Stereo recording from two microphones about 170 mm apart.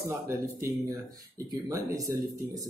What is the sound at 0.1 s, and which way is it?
Speech, 15° right (ahead or behind).